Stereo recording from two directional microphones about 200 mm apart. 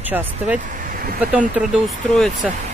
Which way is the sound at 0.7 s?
45° right (ahead or behind).